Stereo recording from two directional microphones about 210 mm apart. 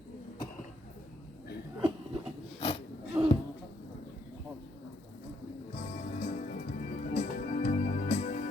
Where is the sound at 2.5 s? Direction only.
30° left (ahead or behind).